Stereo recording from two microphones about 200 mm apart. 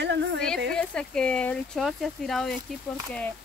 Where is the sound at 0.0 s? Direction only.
60° right (ahead or behind).